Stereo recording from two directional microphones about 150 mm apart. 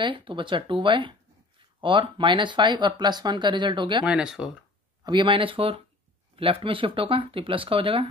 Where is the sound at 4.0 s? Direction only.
5° right (ahead or behind).